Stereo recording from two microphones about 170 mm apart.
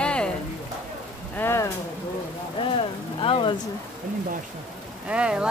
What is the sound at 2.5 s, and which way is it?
Speech, 30° left (ahead or behind).